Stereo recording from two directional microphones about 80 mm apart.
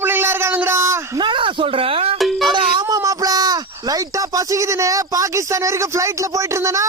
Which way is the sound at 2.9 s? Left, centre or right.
Right.